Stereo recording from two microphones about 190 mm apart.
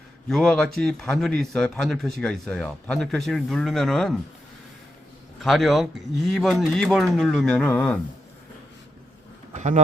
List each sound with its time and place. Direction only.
0.3 s speech: centre (ahead or behind)
5.4 s speech: centre (ahead or behind)
9.5 s speech: 40° right (ahead or behind)